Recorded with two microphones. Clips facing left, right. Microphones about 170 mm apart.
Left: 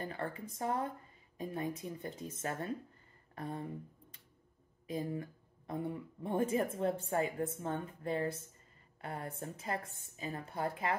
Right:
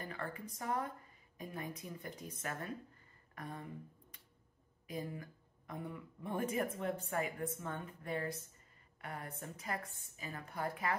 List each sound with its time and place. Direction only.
0.0 s speech: 30° left (ahead or behind)
3.3 s speech: 30° left (ahead or behind)
4.8 s speech: 30° left (ahead or behind)